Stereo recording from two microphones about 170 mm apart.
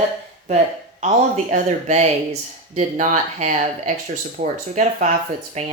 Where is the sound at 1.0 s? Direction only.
45° right (ahead or behind).